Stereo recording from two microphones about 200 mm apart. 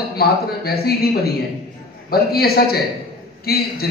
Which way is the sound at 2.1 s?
50° left (ahead or behind).